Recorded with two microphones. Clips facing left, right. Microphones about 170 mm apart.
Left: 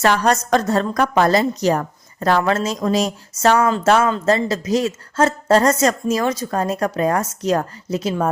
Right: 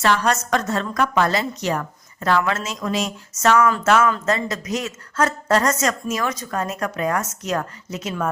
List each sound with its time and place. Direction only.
0.0 s a woman's voice: 40° left (ahead or behind)